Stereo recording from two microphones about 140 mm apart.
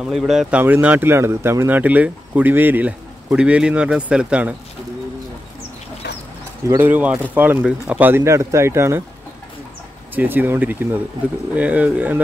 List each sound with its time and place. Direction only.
0.0 s speech: 5° right (ahead or behind)
6.6 s speech: 20° right (ahead or behind)
10.1 s speech: 15° right (ahead or behind)